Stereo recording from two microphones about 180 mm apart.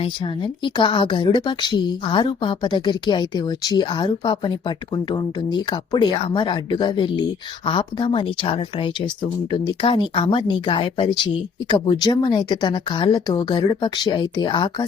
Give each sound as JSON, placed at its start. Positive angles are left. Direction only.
{"t": 0.0, "sound": "a woman's voice", "side_deg": 25}